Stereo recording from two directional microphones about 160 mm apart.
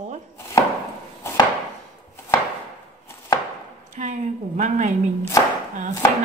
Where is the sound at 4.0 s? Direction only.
50° right (ahead or behind).